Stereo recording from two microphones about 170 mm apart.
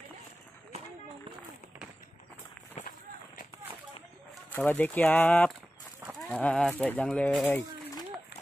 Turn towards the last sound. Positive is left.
turn(degrees=10)  # may be behind; listen again after turning